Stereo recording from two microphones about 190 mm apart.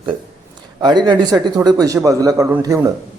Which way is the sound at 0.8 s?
20° right (ahead or behind).